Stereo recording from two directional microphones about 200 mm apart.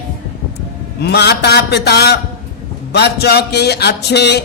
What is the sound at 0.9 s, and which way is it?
Speech, 55° left (ahead or behind).